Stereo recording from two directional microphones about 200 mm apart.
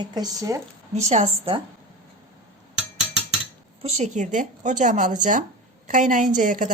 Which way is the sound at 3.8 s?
35° right (ahead or behind).